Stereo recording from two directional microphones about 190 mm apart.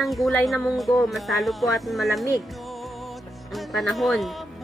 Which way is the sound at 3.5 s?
Centre (ahead or behind).